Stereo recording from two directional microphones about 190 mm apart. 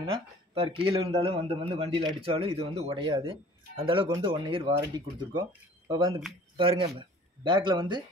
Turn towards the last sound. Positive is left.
turn(degrees=-25)  # may be behind; listen again after turning